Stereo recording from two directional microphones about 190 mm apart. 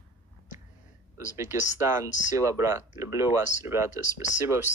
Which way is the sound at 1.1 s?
15° right (ahead or behind).